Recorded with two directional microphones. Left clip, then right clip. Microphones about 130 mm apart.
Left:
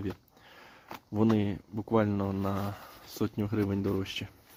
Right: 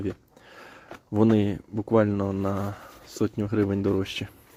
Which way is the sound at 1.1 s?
30° right (ahead or behind).